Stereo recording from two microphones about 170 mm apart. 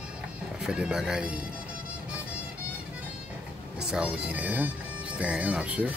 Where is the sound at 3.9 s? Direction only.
5° right (ahead or behind).